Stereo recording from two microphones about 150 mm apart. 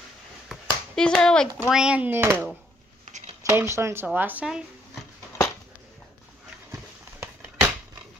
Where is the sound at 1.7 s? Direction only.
5° right (ahead or behind).